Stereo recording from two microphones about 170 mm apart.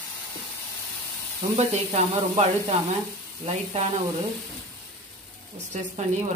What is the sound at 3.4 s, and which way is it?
Speech, 35° right (ahead or behind).